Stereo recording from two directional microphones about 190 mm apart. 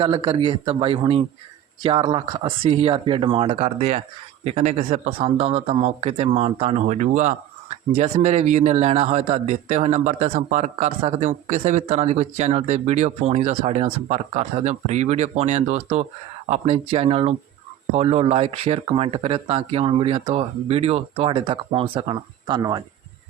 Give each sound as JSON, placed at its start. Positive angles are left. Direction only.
{"t": 0.0, "sound": "a man's voice", "side_deg": -25}